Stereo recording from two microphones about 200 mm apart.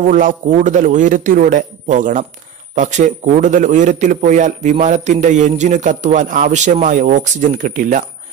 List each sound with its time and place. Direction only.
0.0 s a man's voice: 40° right (ahead or behind)